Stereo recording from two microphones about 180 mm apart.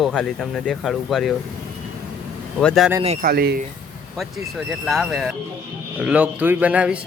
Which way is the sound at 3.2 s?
60° right (ahead or behind).